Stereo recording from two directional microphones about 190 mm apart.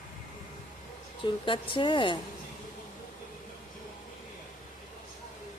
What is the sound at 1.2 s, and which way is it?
Speech, 25° left (ahead or behind).